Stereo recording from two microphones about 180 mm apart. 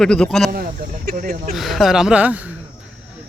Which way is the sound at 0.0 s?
5° left (ahead or behind).